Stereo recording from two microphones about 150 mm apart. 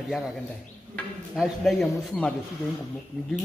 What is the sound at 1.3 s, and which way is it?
A man's voice, centre (ahead or behind).